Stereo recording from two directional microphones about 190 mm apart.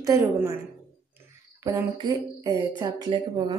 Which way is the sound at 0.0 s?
15° right (ahead or behind).